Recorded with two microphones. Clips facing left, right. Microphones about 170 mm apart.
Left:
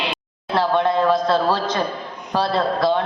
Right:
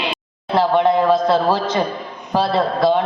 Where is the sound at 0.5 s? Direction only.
20° right (ahead or behind).